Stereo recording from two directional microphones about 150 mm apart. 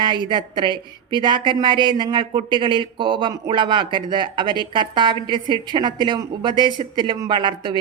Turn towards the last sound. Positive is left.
turn(degrees=-30)  # may be behind; listen again after turning